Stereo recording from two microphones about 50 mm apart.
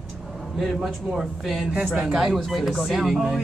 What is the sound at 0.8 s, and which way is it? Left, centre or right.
Speech, centre.